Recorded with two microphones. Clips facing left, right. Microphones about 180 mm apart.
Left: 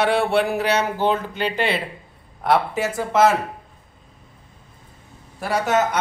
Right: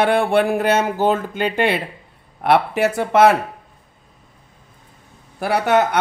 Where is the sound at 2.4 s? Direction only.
65° right (ahead or behind).